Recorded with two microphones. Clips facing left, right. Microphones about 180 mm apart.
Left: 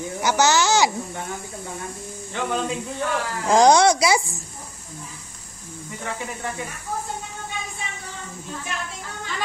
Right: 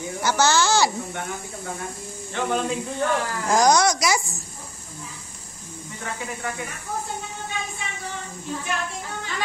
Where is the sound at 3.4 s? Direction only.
25° left (ahead or behind).